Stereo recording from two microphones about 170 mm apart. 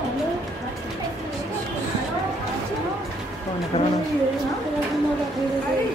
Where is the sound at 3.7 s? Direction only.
35° left (ahead or behind).